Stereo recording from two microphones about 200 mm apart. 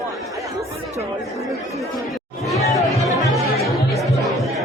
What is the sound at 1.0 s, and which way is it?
Speech, 15° right (ahead or behind).